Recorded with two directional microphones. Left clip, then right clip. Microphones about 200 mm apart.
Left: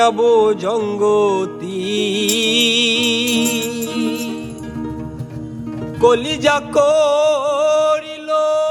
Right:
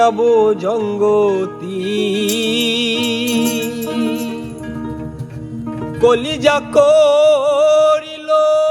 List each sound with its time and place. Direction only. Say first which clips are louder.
0.0 s music: right 1 dB; centre (ahead or behind)
6.0 s music: right 1 dB; centre (ahead or behind)